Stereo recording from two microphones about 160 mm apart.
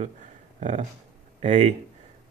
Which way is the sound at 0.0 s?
45° right (ahead or behind).